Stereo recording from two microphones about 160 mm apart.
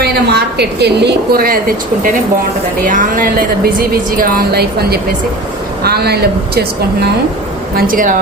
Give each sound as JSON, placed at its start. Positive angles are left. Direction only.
{"t": 0.0, "sound": "a woman's voice", "side_deg": -85}
{"t": 7.8, "sound": "speech", "side_deg": -60}